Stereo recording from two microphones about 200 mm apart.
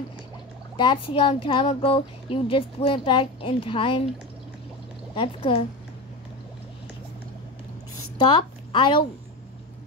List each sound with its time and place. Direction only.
0.7 s speech: 25° left (ahead or behind)
5.1 s speech: 25° left (ahead or behind)
8.2 s a woman's voice: 25° left (ahead or behind)